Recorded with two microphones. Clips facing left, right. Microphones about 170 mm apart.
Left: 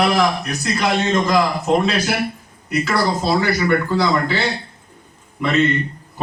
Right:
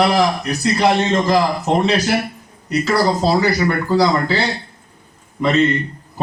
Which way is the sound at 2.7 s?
35° right (ahead or behind).